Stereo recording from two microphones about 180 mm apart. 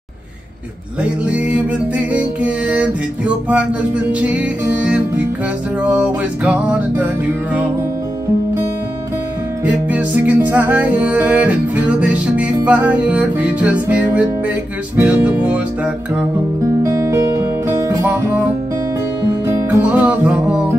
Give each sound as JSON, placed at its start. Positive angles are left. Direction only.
{"t": 1.0, "sound": "music", "side_deg": -5}
{"t": 9.7, "sound": "music", "side_deg": -10}
{"t": 19.4, "sound": "music", "side_deg": -10}